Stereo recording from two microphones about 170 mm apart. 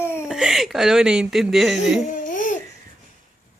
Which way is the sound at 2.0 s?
50° left (ahead or behind).